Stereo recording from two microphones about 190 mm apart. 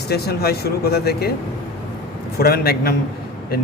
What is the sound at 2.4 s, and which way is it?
Speech, 55° left (ahead or behind).